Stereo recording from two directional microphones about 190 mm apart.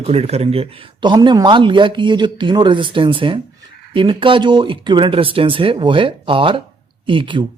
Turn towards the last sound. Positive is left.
turn(degrees=-25)  # may be behind; listen again after turning